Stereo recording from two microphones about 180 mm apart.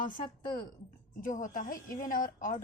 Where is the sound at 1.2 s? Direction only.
45° left (ahead or behind).